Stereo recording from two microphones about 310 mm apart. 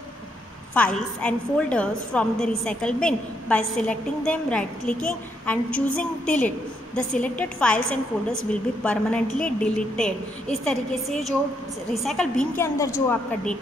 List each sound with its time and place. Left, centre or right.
0.7 s a woman's voice: centre